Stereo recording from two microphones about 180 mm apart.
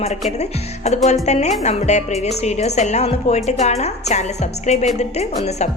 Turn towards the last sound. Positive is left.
turn(degrees=40)  # may be behind; listen again after turning